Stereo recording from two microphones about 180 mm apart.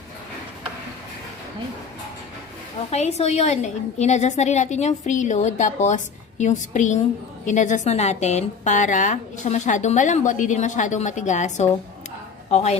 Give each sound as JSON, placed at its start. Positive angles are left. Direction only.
{"t": 2.9, "sound": "a woman's voice", "side_deg": 35}